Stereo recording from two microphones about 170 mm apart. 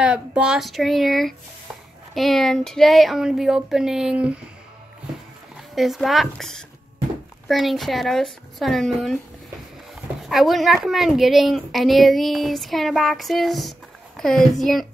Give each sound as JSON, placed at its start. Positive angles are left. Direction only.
{"t": 0.0, "sound": "a woman's voice", "side_deg": -5}
{"t": 5.8, "sound": "a woman's voice", "side_deg": 0}
{"t": 10.2, "sound": "a woman's voice", "side_deg": 0}